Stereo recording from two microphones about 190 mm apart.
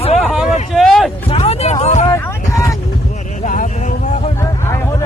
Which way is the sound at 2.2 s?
15° left (ahead or behind).